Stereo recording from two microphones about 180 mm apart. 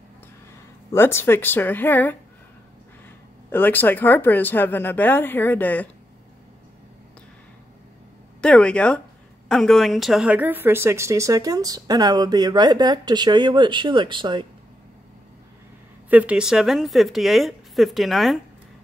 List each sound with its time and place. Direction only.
0.9 s speech: 15° left (ahead or behind)
3.5 s speech: 10° left (ahead or behind)
8.4 s a woman's voice: 5° left (ahead or behind); by 14.5 s 25° right (ahead or behind)
16.1 s a woman's voice: 5° right (ahead or behind)